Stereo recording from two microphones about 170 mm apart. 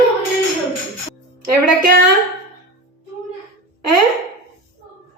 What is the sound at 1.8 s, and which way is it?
Speech, 55° right (ahead or behind).